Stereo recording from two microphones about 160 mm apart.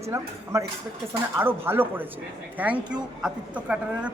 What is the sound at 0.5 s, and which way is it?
A man's voice, 20° right (ahead or behind).